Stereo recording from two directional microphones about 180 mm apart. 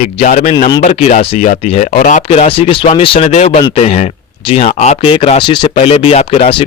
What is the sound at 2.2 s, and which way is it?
Speech, 35° left (ahead or behind).